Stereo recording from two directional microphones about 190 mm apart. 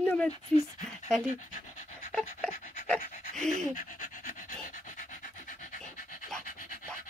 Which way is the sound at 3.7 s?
45° left (ahead or behind).